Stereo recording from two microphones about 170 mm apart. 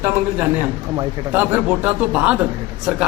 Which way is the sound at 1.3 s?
10° right (ahead or behind).